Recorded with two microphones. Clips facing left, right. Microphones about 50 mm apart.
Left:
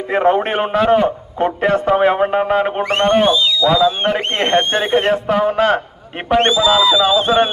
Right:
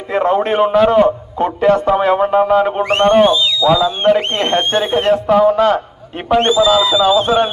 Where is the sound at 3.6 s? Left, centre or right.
Centre.